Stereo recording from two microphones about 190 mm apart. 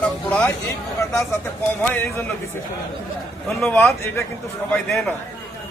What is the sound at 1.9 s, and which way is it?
Speech, 10° left (ahead or behind).